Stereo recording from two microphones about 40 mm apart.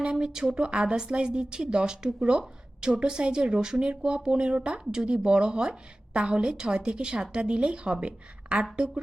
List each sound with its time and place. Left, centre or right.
0.0 s a woman's voice: right